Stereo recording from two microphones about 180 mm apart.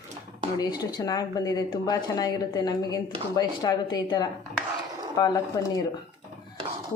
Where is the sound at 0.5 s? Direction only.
20° left (ahead or behind).